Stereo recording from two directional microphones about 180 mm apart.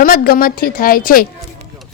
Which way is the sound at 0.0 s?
50° left (ahead or behind).